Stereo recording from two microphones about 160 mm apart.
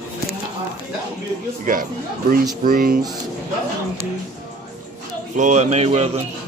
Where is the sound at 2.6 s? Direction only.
65° right (ahead or behind).